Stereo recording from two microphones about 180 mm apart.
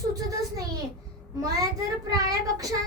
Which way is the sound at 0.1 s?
20° right (ahead or behind).